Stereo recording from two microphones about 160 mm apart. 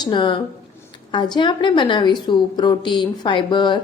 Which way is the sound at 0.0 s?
30° left (ahead or behind).